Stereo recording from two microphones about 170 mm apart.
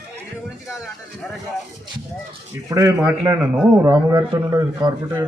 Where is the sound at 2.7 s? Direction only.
20° right (ahead or behind).